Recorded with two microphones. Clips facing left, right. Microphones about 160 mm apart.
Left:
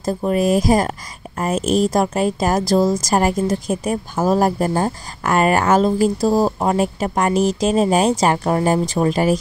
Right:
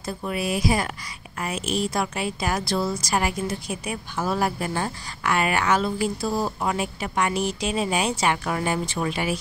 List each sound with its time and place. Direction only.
0.0 s a woman's voice: 40° left (ahead or behind)